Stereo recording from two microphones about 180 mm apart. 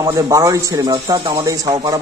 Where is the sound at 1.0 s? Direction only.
30° right (ahead or behind).